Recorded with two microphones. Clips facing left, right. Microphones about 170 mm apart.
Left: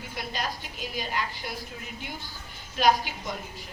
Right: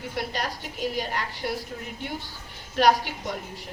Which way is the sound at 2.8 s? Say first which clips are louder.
Right 3 dB; 70° right (ahead or behind).